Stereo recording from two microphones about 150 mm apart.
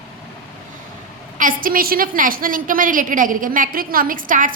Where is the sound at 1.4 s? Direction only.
65° right (ahead or behind).